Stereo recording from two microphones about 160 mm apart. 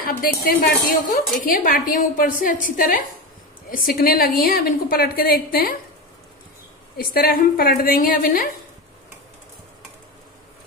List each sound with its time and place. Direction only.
0.0 s a woman's voice: 65° left (ahead or behind)
7.0 s a woman's voice: 65° left (ahead or behind)